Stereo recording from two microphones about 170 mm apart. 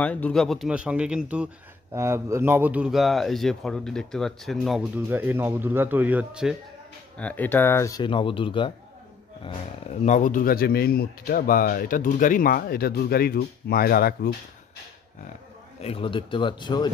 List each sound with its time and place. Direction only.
0.0 s a man's voice: 10° left (ahead or behind)
7.2 s speech: 10° left (ahead or behind)
8.0 s speech: 30° left (ahead or behind)
10.0 s speech: 45° left (ahead or behind); by 14.3 s 60° left (ahead or behind)
15.8 s speech: 35° left (ahead or behind)